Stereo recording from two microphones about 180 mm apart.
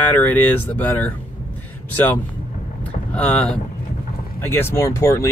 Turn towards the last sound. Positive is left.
turn(degrees=15)  # may be behind; listen again after turning